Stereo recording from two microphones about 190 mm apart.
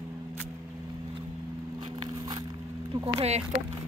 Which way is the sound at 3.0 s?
35° right (ahead or behind).